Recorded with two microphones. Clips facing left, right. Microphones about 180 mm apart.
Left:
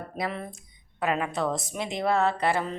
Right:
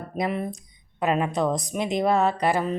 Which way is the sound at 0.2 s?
15° right (ahead or behind).